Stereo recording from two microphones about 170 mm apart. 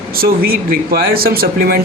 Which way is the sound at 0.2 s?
60° right (ahead or behind).